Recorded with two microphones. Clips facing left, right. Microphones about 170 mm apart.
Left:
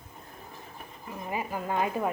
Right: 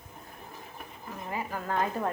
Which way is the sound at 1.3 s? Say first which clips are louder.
Left 2 dB; 15° left (ahead or behind).